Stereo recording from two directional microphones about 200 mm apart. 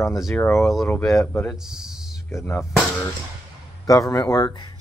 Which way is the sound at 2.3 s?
10° left (ahead or behind).